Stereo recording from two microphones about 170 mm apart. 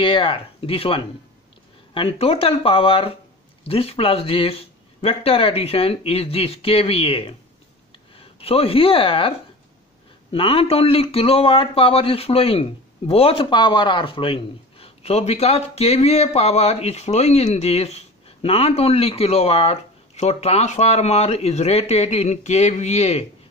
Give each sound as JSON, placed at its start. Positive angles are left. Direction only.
{"t": 0.0, "sound": "a man's voice", "side_deg": 30}
{"t": 10.3, "sound": "a man's voice", "side_deg": 35}